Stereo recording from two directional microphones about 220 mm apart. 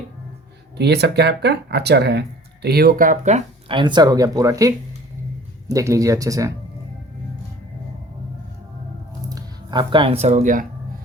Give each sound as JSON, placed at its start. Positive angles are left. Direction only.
{"t": 0.8, "sound": "speech", "side_deg": -50}
{"t": 9.3, "sound": "speech", "side_deg": -20}